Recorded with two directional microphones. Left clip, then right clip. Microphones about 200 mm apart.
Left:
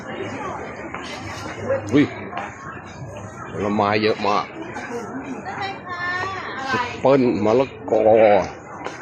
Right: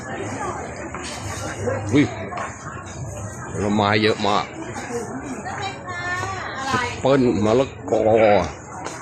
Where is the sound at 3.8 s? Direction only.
10° right (ahead or behind).